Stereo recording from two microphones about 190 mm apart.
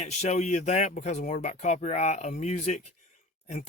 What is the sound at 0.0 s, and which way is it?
Speech, 35° left (ahead or behind).